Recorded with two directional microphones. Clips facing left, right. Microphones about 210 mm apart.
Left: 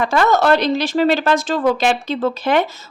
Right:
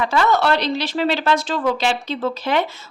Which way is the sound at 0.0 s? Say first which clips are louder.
Left 3 dB; 50° left (ahead or behind).